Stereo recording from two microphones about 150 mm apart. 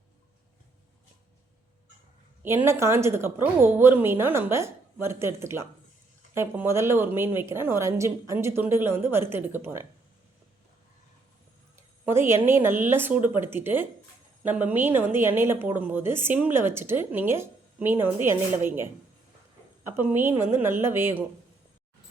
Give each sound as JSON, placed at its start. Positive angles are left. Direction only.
{"t": 2.4, "sound": "a woman's voice", "side_deg": -15}
{"t": 11.8, "sound": "a sound", "side_deg": -15}
{"t": 12.5, "sound": "a woman's voice", "side_deg": -15}